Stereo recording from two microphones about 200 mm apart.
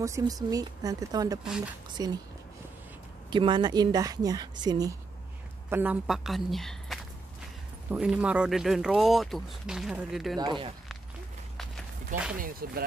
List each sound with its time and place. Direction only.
0.0 s speech: 15° right (ahead or behind)
3.3 s speech: 25° right (ahead or behind)
5.7 s speech: 10° right (ahead or behind)
10.3 s speech: 20° right (ahead or behind)
12.4 s speech: 45° right (ahead or behind)